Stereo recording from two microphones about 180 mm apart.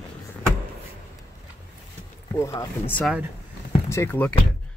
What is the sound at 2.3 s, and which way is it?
Speech, 20° left (ahead or behind).